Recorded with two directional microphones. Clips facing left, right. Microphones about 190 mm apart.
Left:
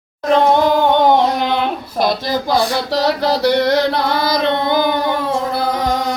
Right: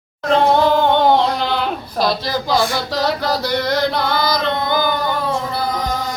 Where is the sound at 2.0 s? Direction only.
20° left (ahead or behind).